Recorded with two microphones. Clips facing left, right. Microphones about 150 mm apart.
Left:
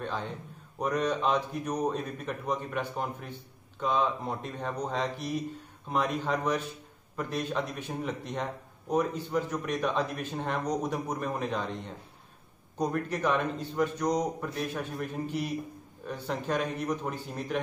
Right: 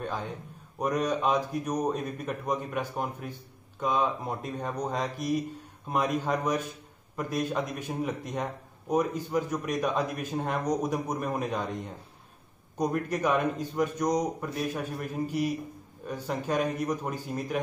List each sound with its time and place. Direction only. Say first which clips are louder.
0.7 s speech: right 1 dB; 10° right (ahead or behind)